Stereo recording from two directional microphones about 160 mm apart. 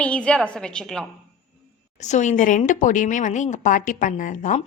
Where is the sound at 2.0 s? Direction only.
50° left (ahead or behind).